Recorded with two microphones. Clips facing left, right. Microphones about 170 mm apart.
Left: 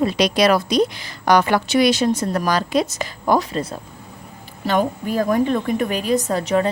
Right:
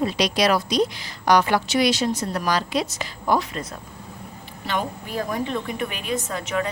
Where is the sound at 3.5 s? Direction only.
30° left (ahead or behind).